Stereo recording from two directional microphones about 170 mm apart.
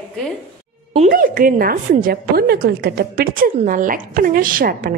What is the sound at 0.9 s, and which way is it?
A woman's voice, 55° right (ahead or behind).